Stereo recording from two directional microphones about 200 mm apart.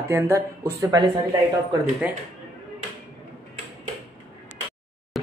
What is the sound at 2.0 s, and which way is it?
Speech, 5° right (ahead or behind).